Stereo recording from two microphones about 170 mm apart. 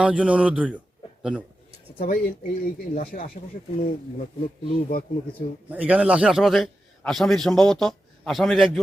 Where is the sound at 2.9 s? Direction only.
55° left (ahead or behind).